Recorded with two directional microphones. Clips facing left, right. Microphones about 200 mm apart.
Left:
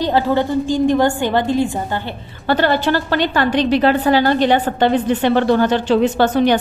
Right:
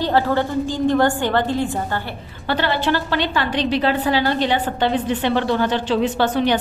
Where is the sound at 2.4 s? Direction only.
45° left (ahead or behind).